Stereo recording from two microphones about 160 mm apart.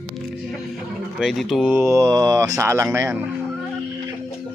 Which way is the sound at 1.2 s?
Centre (ahead or behind).